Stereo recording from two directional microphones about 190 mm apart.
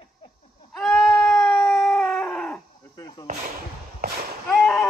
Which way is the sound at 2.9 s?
20° left (ahead or behind).